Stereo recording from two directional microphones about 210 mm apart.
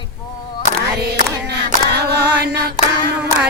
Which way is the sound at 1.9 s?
50° right (ahead or behind).